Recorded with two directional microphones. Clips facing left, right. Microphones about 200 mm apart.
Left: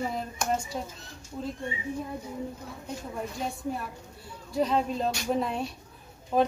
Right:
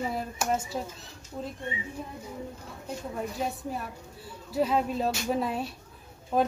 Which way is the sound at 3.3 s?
5° right (ahead or behind).